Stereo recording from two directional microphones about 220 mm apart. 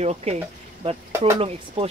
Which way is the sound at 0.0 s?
30° right (ahead or behind).